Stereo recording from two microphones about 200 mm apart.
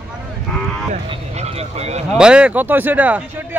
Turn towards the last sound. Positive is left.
turn(degrees=-10)  # may be behind; listen again after turning